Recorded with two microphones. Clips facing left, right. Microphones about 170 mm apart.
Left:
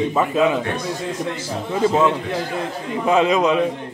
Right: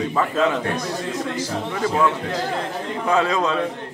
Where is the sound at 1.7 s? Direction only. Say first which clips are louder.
Left 4 dB; 20° left (ahead or behind).